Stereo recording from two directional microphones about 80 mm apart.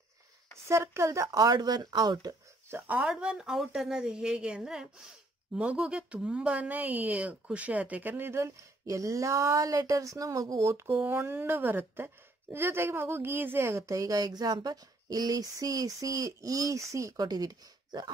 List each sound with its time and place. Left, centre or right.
0.7 s a woman's voice: right
2.9 s speech: centre; by 8.5 s right
8.8 s a woman's voice: right